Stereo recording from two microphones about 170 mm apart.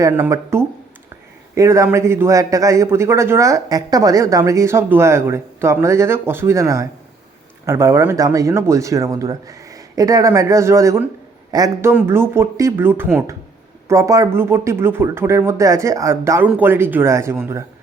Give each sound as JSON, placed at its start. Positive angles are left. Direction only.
{"t": 0.0, "sound": "a man's voice", "side_deg": -15}